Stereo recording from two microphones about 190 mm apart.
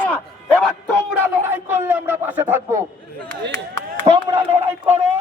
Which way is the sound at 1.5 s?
10° right (ahead or behind).